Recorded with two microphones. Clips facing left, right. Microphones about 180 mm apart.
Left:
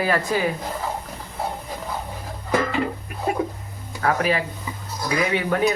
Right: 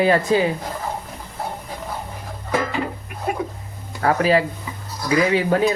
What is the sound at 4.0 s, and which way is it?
Speech, 35° right (ahead or behind).